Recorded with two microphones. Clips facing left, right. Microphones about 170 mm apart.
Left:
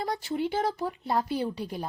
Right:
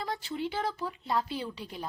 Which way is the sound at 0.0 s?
40° left (ahead or behind).